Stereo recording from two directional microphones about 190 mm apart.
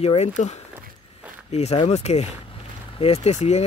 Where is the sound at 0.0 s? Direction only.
35° left (ahead or behind).